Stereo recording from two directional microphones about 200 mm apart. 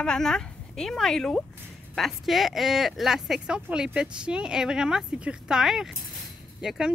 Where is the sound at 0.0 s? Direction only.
5° left (ahead or behind).